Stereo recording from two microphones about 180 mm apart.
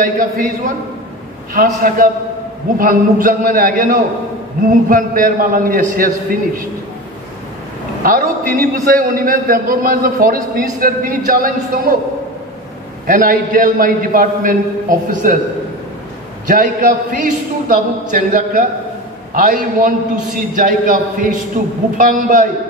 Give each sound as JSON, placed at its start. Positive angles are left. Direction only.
{"t": 0.0, "sound": "a man's voice", "side_deg": -50}
{"t": 8.0, "sound": "a man's voice", "side_deg": -50}
{"t": 13.0, "sound": "a man's voice", "side_deg": -50}
{"t": 16.4, "sound": "a man's voice", "side_deg": -50}